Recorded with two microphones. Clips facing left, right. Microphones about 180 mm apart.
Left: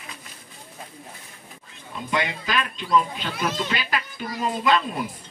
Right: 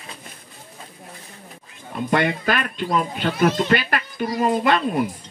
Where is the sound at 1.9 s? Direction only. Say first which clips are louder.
Right 6 dB; 55° right (ahead or behind).